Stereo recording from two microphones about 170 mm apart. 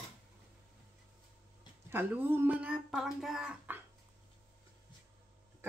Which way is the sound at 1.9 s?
10° right (ahead or behind).